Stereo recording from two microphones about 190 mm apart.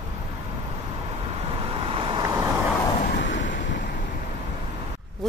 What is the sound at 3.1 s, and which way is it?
Waves, 70° left (ahead or behind).